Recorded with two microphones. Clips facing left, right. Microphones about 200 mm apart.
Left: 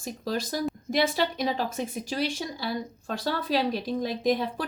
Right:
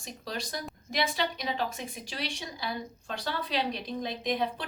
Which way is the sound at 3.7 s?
Centre (ahead or behind).